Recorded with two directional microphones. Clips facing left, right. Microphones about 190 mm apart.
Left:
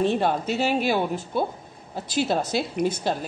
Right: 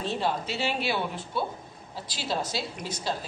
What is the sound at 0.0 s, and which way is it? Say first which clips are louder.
A woman's voice: left 7 dB; 55° left (ahead or behind).